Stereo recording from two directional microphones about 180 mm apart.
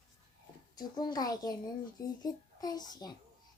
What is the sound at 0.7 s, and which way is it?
A child's voice, 20° left (ahead or behind).